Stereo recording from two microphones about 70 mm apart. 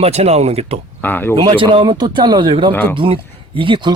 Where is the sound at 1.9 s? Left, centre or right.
Right.